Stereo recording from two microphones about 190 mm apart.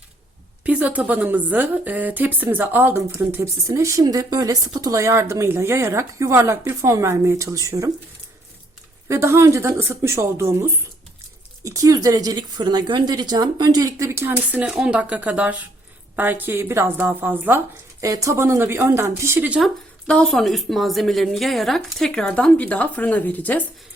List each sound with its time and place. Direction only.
0.6 s a woman's voice: 5° right (ahead or behind)
9.0 s a woman's voice: 15° right (ahead or behind); by 23.6 s 10° left (ahead or behind)